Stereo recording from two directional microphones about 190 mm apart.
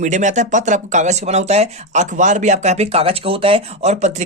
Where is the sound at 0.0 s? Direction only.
40° right (ahead or behind).